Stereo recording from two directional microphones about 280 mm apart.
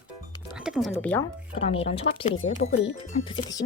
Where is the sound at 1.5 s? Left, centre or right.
Centre.